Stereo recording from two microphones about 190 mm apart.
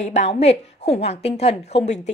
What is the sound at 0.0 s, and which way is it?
A woman's voice, 35° left (ahead or behind).